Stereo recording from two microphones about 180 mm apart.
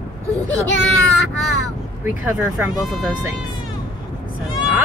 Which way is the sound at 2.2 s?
5° right (ahead or behind).